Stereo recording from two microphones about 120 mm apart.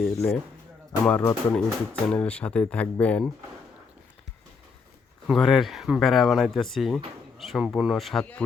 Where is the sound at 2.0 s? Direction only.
10° left (ahead or behind).